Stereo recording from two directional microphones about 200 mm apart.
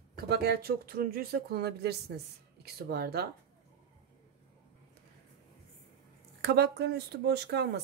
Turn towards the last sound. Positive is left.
turn(degrees=-55)  # may be behind; listen again after turning